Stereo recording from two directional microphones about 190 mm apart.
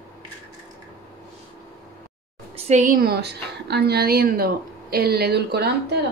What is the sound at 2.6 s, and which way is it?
A woman's voice, 40° right (ahead or behind).